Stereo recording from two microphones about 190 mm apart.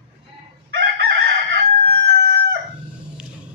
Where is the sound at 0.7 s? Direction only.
60° right (ahead or behind).